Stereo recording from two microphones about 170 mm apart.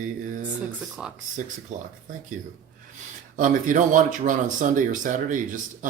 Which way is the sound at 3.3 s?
50° right (ahead or behind).